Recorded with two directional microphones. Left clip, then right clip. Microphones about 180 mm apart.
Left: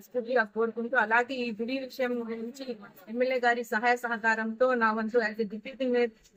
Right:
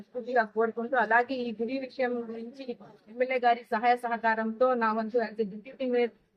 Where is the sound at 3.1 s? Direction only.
20° right (ahead or behind).